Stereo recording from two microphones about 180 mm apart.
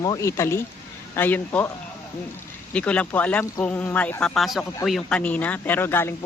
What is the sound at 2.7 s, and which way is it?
Speech, 5° left (ahead or behind).